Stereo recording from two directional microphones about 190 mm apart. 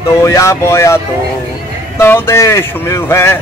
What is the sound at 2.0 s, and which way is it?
Speech, 15° left (ahead or behind).